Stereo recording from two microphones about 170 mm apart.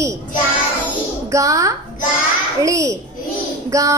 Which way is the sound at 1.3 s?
20° right (ahead or behind).